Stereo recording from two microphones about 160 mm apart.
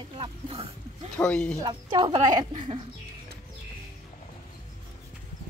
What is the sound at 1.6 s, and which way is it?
Speech, 25° right (ahead or behind).